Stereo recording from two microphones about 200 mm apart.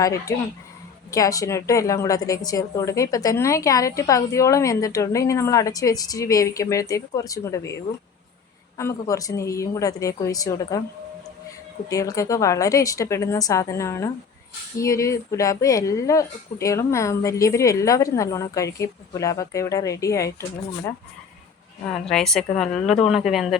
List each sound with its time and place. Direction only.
0.0 s a woman's voice: 15° left (ahead or behind)
8.8 s a woman's voice: 15° left (ahead or behind)
11.9 s a woman's voice: 15° left (ahead or behind)
21.8 s a woman's voice: 5° left (ahead or behind)